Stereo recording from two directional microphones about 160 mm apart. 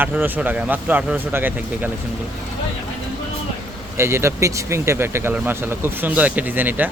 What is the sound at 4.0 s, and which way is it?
Speech, 15° right (ahead or behind).